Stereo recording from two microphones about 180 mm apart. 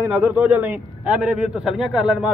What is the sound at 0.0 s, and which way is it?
A man's voice, 10° right (ahead or behind).